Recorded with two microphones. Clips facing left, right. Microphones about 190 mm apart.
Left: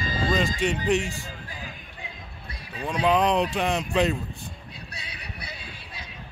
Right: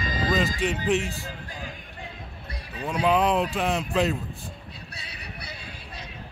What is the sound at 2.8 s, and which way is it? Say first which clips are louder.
Speech: even; 5° right (ahead or behind).